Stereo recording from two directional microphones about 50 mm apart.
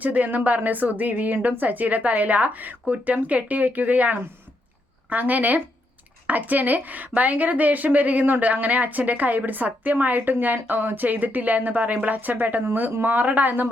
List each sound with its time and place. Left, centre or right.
0.0 s a woman's voice: right